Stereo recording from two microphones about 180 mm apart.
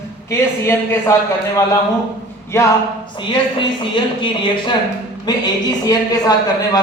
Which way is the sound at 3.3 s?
25° left (ahead or behind).